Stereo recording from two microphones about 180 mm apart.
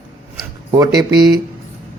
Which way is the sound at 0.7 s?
20° right (ahead or behind).